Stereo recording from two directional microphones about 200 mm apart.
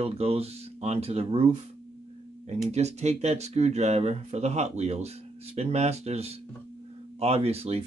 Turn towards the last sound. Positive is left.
turn(degrees=-30)  # may be behind; listen again after turning